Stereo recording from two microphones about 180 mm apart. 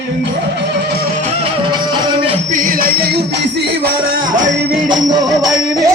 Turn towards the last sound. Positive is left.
turn(degrees=-20)  # may be behind; listen again after turning